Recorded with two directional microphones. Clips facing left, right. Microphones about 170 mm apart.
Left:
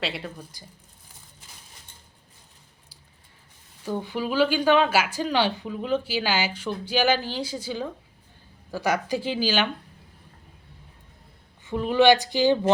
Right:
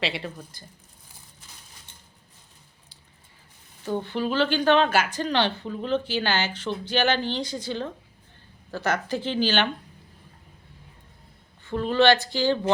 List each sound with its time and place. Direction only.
0.0 s speech: centre (ahead or behind)
3.8 s a woman's voice: 10° left (ahead or behind)
11.6 s a woman's voice: 15° left (ahead or behind)